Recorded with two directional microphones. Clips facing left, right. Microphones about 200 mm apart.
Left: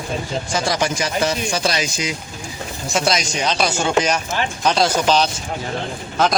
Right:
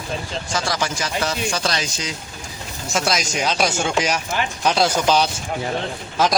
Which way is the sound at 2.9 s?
Centre (ahead or behind).